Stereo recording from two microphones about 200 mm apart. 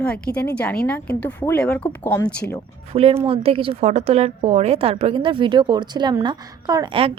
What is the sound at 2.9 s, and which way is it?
A woman's voice, 30° right (ahead or behind).